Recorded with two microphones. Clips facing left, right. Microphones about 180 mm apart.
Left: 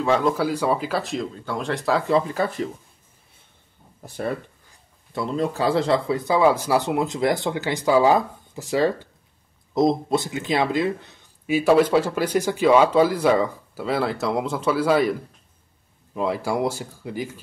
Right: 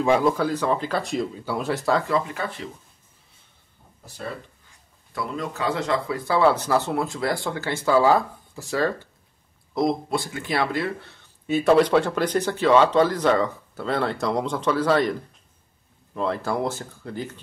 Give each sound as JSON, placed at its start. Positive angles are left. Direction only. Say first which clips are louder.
{"t": 0.0, "sound": "speech", "louder": "right 1 dB", "side_deg": -10}
{"t": 0.3, "sound": "speech", "louder": "left 1 dB", "side_deg": 10}
{"t": 2.0, "sound": "speech", "louder": "left 4 dB", "side_deg": 30}
{"t": 4.0, "sound": "speech", "louder": "left 6 dB", "side_deg": 60}
{"t": 5.1, "sound": "speech", "louder": "left 5 dB", "side_deg": 30}
{"t": 16.2, "sound": "speech", "louder": "left 2 dB", "side_deg": 10}